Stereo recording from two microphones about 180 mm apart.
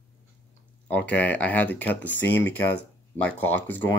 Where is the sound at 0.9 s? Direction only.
10° left (ahead or behind).